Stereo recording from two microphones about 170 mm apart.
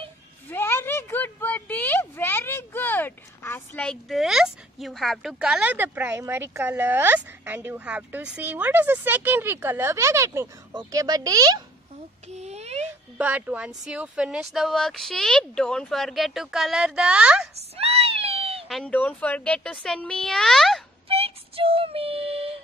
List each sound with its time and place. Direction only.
0.5 s a woman's voice: 15° left (ahead or behind); by 11.6 s 20° right (ahead or behind)
12.3 s a sound: 40° right (ahead or behind)
13.2 s a woman's voice: 10° right (ahead or behind)
17.7 s cat: 35° right (ahead or behind)
18.7 s speech: 5° left (ahead or behind)
21.1 s music: 35° right (ahead or behind)